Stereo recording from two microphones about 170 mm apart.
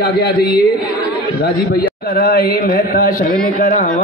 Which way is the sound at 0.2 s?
70° left (ahead or behind).